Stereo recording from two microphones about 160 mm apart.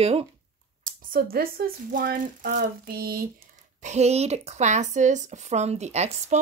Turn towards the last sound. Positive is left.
turn(degrees=-45)  # may be behind; listen again after turning